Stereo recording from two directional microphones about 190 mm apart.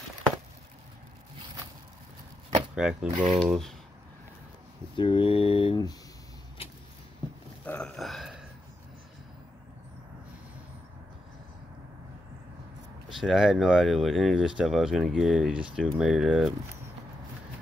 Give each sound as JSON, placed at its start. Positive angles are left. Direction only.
{"t": 2.7, "sound": "speech", "side_deg": -5}
{"t": 3.1, "sound": "mechanisms", "side_deg": -25}
{"t": 3.3, "sound": "speech", "side_deg": 0}
{"t": 4.9, "sound": "speech", "side_deg": 25}
{"t": 7.6, "sound": "a sound", "side_deg": 5}
{"t": 13.2, "sound": "speech", "side_deg": 0}